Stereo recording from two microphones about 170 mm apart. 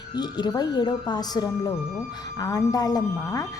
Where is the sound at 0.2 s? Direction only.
25° left (ahead or behind).